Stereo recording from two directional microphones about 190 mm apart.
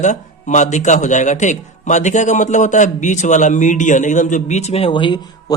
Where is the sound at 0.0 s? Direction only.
40° left (ahead or behind).